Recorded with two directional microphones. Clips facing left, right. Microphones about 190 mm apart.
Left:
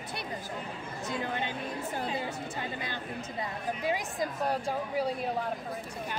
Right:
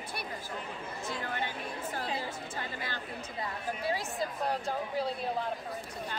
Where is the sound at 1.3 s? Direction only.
20° left (ahead or behind).